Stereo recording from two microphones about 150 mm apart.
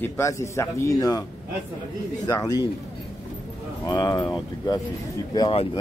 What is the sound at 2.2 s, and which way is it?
Speech, 25° left (ahead or behind).